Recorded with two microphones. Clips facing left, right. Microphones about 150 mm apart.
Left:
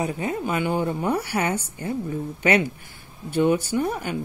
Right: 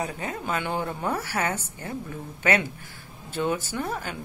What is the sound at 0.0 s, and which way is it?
Speech, 20° left (ahead or behind).